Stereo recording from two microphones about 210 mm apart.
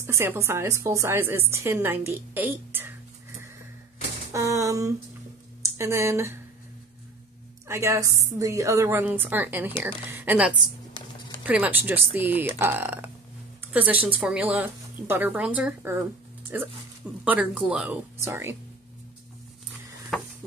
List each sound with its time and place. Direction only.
0.0 s speech: 10° right (ahead or behind)
4.3 s speech: 15° right (ahead or behind)
7.6 s speech: 10° right (ahead or behind)
10.9 s a sound: 25° left (ahead or behind)
11.4 s speech: 5° right (ahead or behind)
20.1 s a sound: 5° left (ahead or behind)